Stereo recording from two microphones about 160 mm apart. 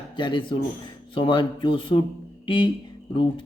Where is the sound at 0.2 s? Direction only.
30° left (ahead or behind).